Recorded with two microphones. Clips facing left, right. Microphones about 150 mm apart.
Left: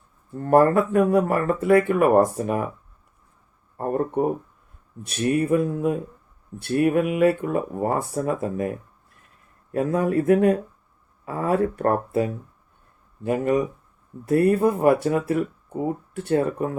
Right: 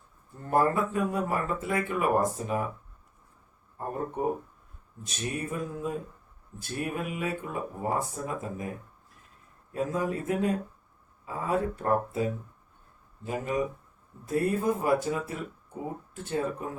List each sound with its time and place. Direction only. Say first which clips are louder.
0.4 s speech: left 8 dB; 65° left (ahead or behind)
3.8 s speech: left 9 dB; 65° left (ahead or behind)
9.7 s speech: left 8 dB; 65° left (ahead or behind)